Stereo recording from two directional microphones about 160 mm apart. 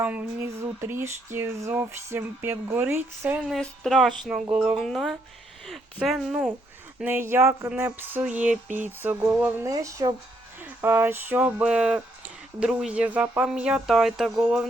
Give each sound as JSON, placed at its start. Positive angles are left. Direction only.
{"t": 0.0, "sound": "speech", "side_deg": -10}
{"t": 3.4, "sound": "speech", "side_deg": 0}
{"t": 7.0, "sound": "speech", "side_deg": -15}
{"t": 10.6, "sound": "speech", "side_deg": -10}